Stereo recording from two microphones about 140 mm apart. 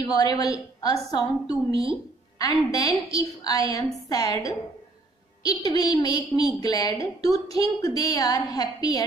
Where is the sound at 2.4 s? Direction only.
25° left (ahead or behind).